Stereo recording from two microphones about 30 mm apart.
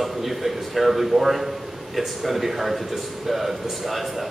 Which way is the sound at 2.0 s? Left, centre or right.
Centre.